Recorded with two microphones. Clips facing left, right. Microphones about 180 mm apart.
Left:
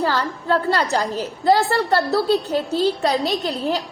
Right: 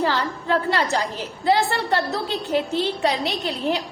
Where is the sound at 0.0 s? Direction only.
40° left (ahead or behind).